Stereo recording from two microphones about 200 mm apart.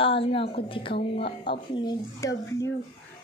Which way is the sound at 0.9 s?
55° left (ahead or behind).